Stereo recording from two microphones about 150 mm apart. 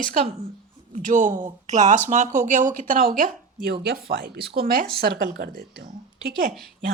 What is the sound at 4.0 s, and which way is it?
Speech, 75° right (ahead or behind).